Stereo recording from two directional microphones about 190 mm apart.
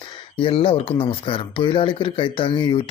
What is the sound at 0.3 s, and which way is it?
Speech, 30° left (ahead or behind).